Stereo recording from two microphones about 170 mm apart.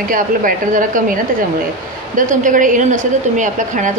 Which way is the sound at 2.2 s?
50° right (ahead or behind).